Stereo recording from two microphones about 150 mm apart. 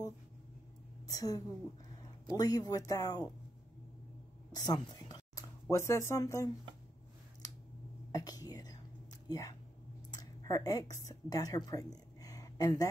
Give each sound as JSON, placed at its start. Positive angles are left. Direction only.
{"t": 1.0, "sound": "a woman's voice", "side_deg": 25}
{"t": 4.5, "sound": "speech", "side_deg": 25}
{"t": 8.1, "sound": "whispering", "side_deg": 25}
{"t": 9.3, "sound": "a woman's voice", "side_deg": 25}
{"t": 12.2, "sound": "a sound", "side_deg": 25}